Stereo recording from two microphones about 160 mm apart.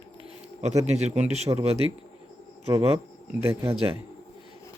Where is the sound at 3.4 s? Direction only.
15° right (ahead or behind).